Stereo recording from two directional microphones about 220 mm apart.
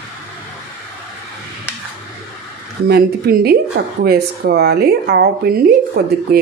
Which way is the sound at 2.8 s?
45° right (ahead or behind).